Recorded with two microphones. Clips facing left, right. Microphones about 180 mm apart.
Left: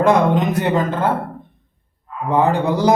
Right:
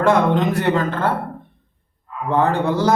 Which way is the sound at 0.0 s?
15° left (ahead or behind).